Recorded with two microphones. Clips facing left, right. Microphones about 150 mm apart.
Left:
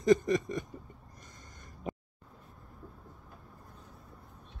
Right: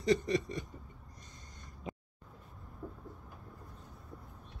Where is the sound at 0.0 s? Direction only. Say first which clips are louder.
Left 5 dB; 45° left (ahead or behind).